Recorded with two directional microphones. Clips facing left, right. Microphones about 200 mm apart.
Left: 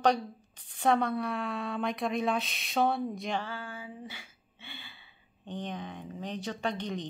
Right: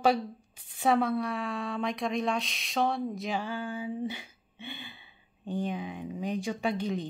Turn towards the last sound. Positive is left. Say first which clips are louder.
# right 3 dB
turn(degrees=-5)  # may be behind; listen again after turning